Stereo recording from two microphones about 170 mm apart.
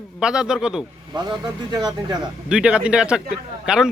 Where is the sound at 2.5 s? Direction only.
5° right (ahead or behind).